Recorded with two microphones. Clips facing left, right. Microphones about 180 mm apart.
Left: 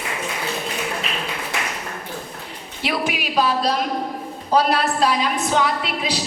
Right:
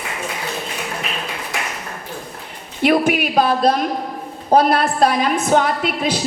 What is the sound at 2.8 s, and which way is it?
A woman's voice, 50° right (ahead or behind).